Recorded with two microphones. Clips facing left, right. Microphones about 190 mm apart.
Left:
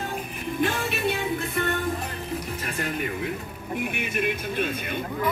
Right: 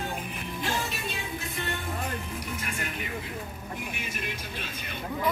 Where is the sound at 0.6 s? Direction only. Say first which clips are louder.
Left 7 dB; 60° left (ahead or behind).